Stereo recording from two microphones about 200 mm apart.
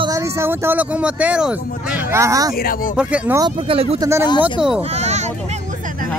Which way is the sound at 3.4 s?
30° right (ahead or behind).